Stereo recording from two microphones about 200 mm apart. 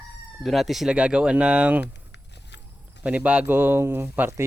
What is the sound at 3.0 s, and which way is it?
Speech, 5° right (ahead or behind).